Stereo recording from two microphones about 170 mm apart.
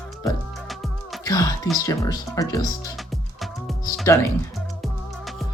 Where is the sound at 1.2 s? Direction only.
20° left (ahead or behind).